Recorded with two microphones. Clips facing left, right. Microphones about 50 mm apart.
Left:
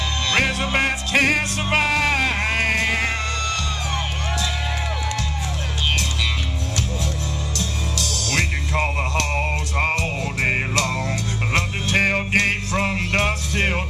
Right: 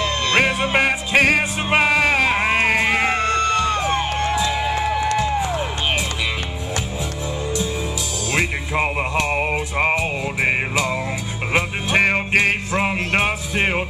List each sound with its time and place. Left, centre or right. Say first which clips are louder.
0.3 s music: right 2 dB; centre
4.3 s music: right 6 dB; centre
8.3 s music: right 3 dB; centre